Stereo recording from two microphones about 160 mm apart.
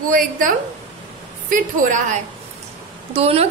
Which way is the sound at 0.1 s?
60° right (ahead or behind).